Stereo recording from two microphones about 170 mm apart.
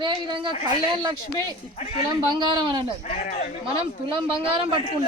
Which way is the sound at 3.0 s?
45° left (ahead or behind).